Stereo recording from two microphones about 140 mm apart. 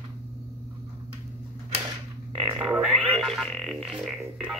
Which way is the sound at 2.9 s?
Centre (ahead or behind).